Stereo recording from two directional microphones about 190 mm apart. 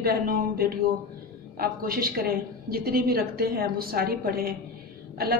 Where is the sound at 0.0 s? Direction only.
50° right (ahead or behind).